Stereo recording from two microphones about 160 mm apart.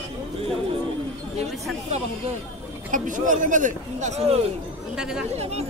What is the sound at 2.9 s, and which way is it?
Speech, 55° right (ahead or behind).